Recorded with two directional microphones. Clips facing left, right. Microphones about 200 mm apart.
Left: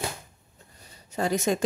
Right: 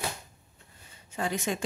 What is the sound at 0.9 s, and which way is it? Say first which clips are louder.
Speech: left 5 dB; 40° left (ahead or behind).